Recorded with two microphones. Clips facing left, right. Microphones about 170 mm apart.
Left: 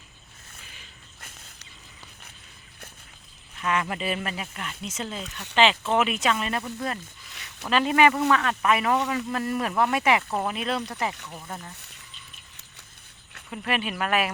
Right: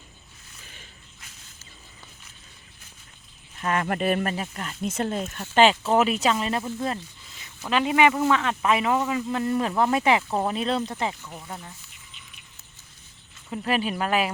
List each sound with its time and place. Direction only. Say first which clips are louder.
3.6 s speech: right 2 dB; 45° right (ahead or behind)
4.9 s speech: right 9 dB; 55° right (ahead or behind); by 7.0 s 25° right (ahead or behind)
7.3 s a sound: left 2 dB; 75° left (ahead or behind)
7.7 s speech: even; 15° right (ahead or behind)
11.3 s speech: even; 5° right (ahead or behind)
13.5 s speech: right 3 dB; 30° right (ahead or behind)